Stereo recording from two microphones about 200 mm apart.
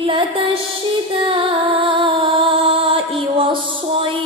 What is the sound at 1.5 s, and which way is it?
Music, 25° right (ahead or behind).